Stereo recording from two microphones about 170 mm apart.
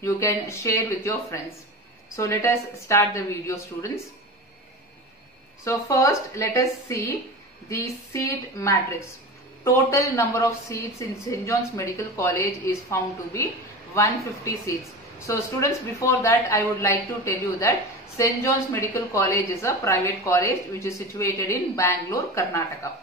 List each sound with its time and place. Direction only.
0.0 s a woman's voice: 15° left (ahead or behind)
5.6 s a woman's voice: 20° left (ahead or behind)